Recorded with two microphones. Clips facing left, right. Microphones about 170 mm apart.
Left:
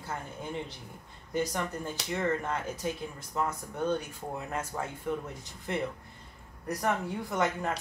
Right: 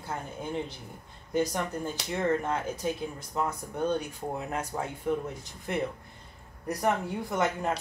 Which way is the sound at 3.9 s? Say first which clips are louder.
Right 2 dB; 15° right (ahead or behind).